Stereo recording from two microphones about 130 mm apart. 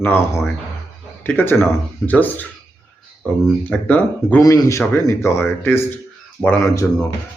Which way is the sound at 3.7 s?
10° left (ahead or behind).